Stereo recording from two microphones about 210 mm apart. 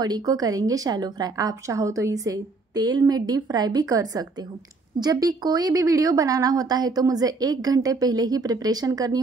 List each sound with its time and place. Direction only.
0.0 s a woman's voice: 20° right (ahead or behind)